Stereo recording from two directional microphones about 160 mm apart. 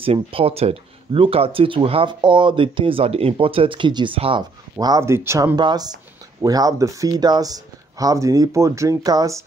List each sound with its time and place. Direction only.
0.0 s speech: 35° right (ahead or behind)
4.7 s speech: 20° right (ahead or behind)
5.6 s speech: 25° right (ahead or behind)